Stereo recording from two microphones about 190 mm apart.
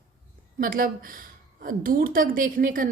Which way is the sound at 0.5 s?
50° right (ahead or behind).